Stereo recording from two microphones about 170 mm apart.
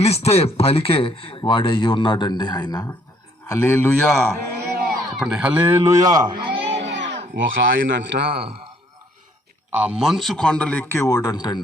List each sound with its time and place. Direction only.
0.0 s speech: 35° left (ahead or behind); by 3.9 s 15° left (ahead or behind)
4.8 s speech: 5° right (ahead or behind); by 6.8 s 35° right (ahead or behind)
6.8 s speech: 90° right
9.6 s a man's voice: 10° right (ahead or behind); by 11.6 s 20° left (ahead or behind)